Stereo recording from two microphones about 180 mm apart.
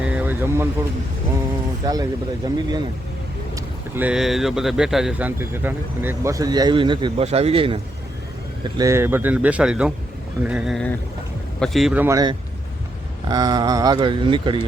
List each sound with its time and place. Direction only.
0.0 s vehicle: 5° right (ahead or behind)
1.9 s speech: 20° right (ahead or behind)
3.5 s speech: 10° right (ahead or behind); by 7.8 s 30° right (ahead or behind)
8.8 s speech: 15° right (ahead or behind)
10.4 s a sound: 5° right (ahead or behind)
12.0 s speech: 20° right (ahead or behind)